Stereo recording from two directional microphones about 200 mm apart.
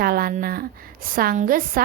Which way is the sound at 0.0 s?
45° right (ahead or behind).